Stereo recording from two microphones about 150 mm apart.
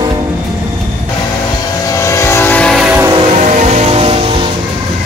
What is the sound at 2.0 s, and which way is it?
Vehicle, 20° left (ahead or behind).